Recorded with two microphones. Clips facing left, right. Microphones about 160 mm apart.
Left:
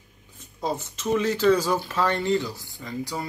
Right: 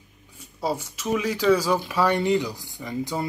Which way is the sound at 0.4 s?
10° right (ahead or behind).